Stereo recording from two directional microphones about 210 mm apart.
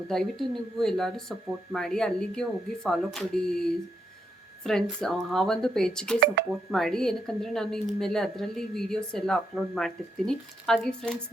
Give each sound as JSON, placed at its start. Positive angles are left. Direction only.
{"t": 0.1, "sound": "speech", "side_deg": 0}
{"t": 6.1, "sound": "speech", "side_deg": -50}
{"t": 6.7, "sound": "speech", "side_deg": 0}